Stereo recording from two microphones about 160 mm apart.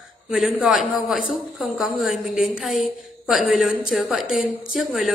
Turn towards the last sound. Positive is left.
turn(degrees=-5)  # may be behind; listen again after turning